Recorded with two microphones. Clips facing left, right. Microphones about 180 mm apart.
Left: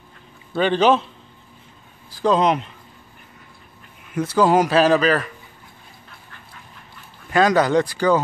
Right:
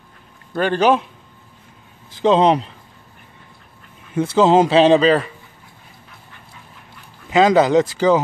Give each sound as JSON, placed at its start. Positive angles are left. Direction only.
{"t": 0.6, "sound": "a man's voice", "side_deg": -10}
{"t": 2.0, "sound": "speech", "side_deg": -20}
{"t": 4.1, "sound": "speech", "side_deg": -25}
{"t": 7.2, "sound": "speech", "side_deg": -20}